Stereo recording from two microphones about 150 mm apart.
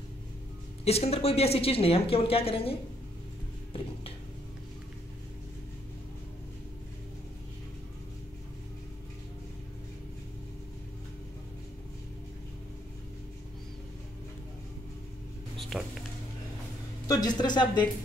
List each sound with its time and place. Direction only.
0.8 s a woman's voice: 45° left (ahead or behind)
15.7 s a sound: 10° right (ahead or behind)
17.1 s speech: 25° left (ahead or behind)